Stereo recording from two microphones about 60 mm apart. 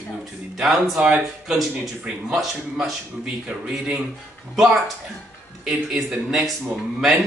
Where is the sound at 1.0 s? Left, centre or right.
Centre.